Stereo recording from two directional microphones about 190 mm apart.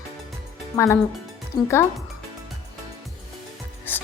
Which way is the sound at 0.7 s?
15° left (ahead or behind).